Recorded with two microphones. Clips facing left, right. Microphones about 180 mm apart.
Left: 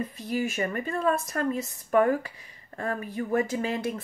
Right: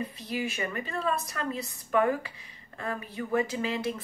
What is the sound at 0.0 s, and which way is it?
Speech, 45° left (ahead or behind).